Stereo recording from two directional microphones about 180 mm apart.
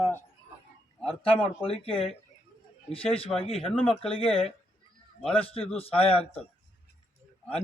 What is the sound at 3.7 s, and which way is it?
Speech, 5° left (ahead or behind).